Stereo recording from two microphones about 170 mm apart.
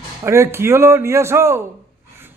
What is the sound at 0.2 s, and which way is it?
A man's voice, 15° right (ahead or behind).